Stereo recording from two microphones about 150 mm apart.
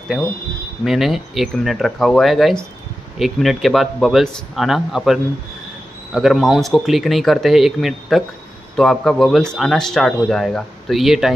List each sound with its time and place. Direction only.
0.8 s speech: centre (ahead or behind)